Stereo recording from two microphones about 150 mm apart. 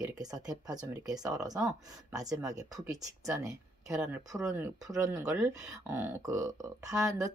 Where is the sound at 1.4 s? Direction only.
25° right (ahead or behind).